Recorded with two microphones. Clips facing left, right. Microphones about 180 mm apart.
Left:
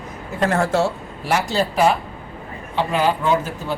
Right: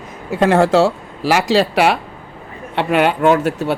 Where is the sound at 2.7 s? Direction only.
70° right (ahead or behind).